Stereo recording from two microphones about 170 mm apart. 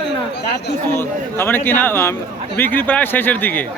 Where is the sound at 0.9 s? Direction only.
15° left (ahead or behind).